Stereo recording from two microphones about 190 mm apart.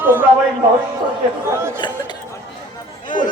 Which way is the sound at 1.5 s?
15° right (ahead or behind).